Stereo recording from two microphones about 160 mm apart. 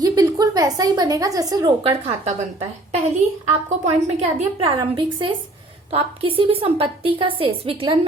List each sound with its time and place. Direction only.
0.0 s a woman's voice: 25° right (ahead or behind)
1.8 s a woman's voice: 40° right (ahead or behind)
4.8 s a woman's voice: 30° right (ahead or behind)